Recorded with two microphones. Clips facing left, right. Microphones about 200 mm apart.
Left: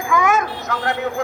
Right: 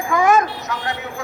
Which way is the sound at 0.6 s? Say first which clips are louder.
Left 4 dB; 55° left (ahead or behind).